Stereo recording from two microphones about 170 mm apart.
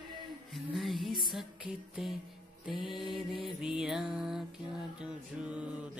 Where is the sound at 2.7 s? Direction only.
30° left (ahead or behind).